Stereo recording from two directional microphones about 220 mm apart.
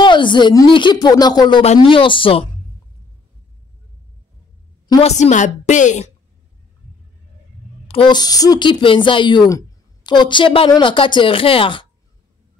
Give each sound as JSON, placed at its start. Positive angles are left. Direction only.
{"t": 0.0, "sound": "speech", "side_deg": 20}
{"t": 4.8, "sound": "a sound", "side_deg": 20}
{"t": 5.1, "sound": "a woman's voice", "side_deg": 35}
{"t": 7.9, "sound": "speech", "side_deg": 20}